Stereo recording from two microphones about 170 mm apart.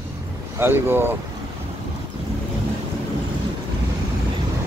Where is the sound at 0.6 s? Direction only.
15° right (ahead or behind).